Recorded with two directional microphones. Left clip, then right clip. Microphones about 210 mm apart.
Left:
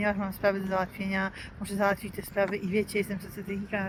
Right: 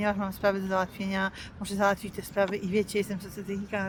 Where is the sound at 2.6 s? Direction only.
15° right (ahead or behind).